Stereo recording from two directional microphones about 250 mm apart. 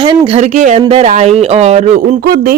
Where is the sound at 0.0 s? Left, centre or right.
Centre.